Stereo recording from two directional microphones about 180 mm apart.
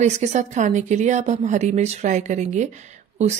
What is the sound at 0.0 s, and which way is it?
A woman's voice, 40° right (ahead or behind).